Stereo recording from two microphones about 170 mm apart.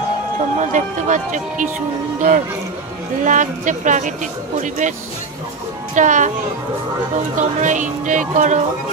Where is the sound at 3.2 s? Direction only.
45° right (ahead or behind).